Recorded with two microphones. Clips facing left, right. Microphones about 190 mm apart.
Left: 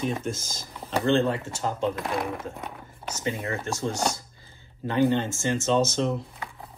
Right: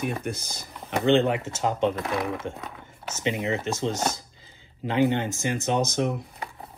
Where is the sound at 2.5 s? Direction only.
85° right.